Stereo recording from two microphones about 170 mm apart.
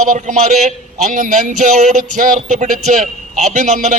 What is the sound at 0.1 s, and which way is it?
A man's voice, 45° right (ahead or behind).